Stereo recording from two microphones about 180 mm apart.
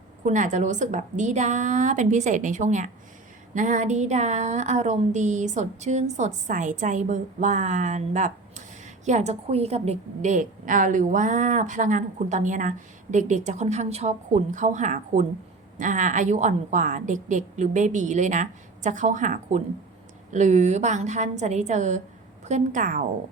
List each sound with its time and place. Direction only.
0.3 s a woman's voice: 45° right (ahead or behind)